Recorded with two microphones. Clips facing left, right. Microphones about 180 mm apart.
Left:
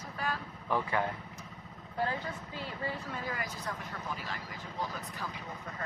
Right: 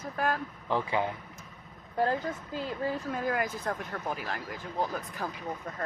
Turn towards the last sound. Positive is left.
turn(degrees=-50)  # may be behind; listen again after turning